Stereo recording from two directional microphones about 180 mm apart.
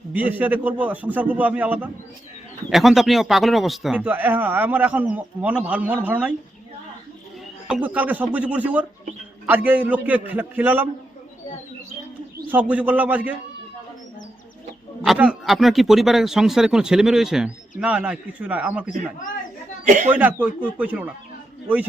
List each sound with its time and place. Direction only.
0.1 s a man's voice: 10° right (ahead or behind)
7.7 s a man's voice: 10° right (ahead or behind)
12.5 s a man's voice: 10° right (ahead or behind)
15.0 s speech: 5° right (ahead or behind)
19.8 s speech: 45° right (ahead or behind)
20.1 s a man's voice: 10° right (ahead or behind)